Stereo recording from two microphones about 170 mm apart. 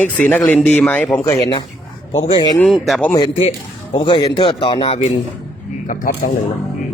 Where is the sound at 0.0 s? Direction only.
10° left (ahead or behind).